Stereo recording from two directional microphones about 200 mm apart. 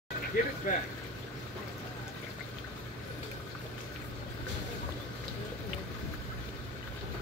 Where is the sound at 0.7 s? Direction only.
40° left (ahead or behind).